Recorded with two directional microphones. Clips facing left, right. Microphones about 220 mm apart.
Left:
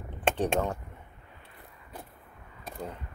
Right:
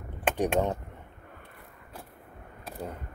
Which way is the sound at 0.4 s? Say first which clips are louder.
Right 4 dB; 15° right (ahead or behind).